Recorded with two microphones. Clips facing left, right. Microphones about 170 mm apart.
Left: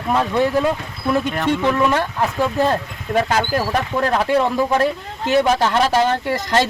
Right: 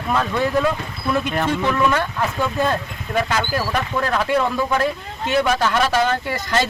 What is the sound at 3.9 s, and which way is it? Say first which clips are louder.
Speech: left 3 dB; 30° left (ahead or behind).